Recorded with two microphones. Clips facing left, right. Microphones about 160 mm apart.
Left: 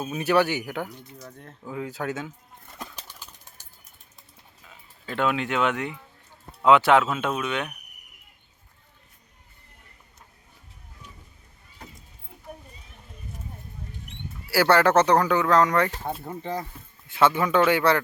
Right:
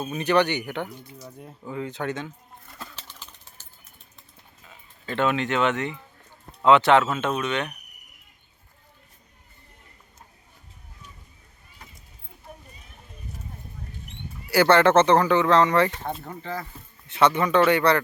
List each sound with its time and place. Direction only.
0.0 s speech: 5° left (ahead or behind)
1.2 s speech: 10° right (ahead or behind)
1.6 s speech: centre (ahead or behind)
2.7 s a sound: 15° left (ahead or behind)
5.0 s speech: centre (ahead or behind)
14.5 s speech: centre (ahead or behind)
16.0 s speech: 10° left (ahead or behind)
17.1 s speech: 5° left (ahead or behind)